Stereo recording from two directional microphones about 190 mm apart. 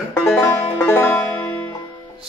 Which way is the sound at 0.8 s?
10° left (ahead or behind).